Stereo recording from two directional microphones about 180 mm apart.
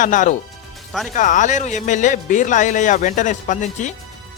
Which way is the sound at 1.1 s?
45° left (ahead or behind).